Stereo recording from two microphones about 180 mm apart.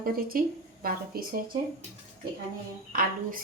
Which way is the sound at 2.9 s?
50° right (ahead or behind).